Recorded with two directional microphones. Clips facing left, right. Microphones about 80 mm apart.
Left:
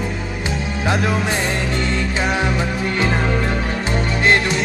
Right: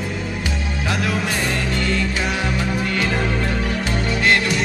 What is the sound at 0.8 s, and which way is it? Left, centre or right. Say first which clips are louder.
Music: left 4 dB; left.